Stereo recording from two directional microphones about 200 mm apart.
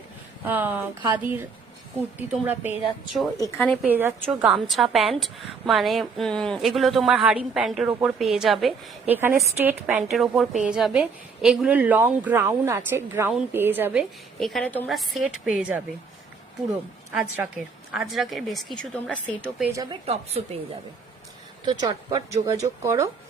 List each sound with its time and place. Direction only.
0.4 s a woman's voice: 10° right (ahead or behind)
3.4 s a woman's voice: 5° left (ahead or behind)
3.8 s a woman's voice: 10° right (ahead or behind)
9.1 s a woman's voice: 10° right (ahead or behind)
14.3 s a woman's voice: centre (ahead or behind)
17.1 s a woman's voice: 5° right (ahead or behind)
19.7 s speech: 20° right (ahead or behind)
20.1 s a woman's voice: 30° right (ahead or behind)
21.7 s a woman's voice: 20° right (ahead or behind)